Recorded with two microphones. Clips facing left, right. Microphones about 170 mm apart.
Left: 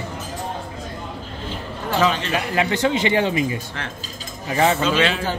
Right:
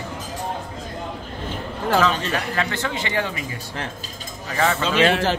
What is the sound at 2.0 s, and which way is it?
Speech, 15° left (ahead or behind).